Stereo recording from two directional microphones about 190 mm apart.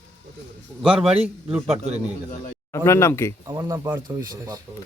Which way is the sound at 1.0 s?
30° right (ahead or behind).